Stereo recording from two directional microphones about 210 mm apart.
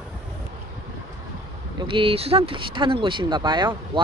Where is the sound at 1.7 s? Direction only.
25° right (ahead or behind).